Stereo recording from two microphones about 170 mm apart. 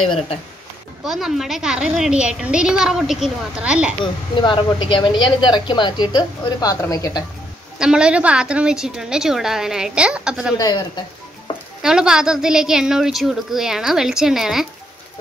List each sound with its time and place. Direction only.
1.0 s a woman's voice: centre (ahead or behind)
4.0 s speech: 30° left (ahead or behind)
7.8 s a woman's voice: 5° right (ahead or behind)
11.8 s a woman's voice: 5° right (ahead or behind)